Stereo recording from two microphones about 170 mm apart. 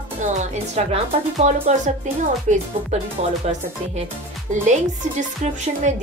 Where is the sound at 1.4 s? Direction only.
40° right (ahead or behind).